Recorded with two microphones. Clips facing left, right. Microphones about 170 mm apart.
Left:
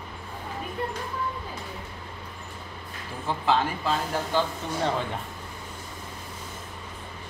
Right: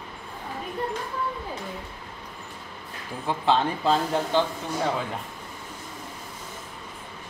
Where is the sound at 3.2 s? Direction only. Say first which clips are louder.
Right 2 dB; 25° right (ahead or behind).